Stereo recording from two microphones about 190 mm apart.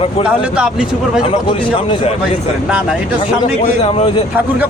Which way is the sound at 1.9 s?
35° left (ahead or behind).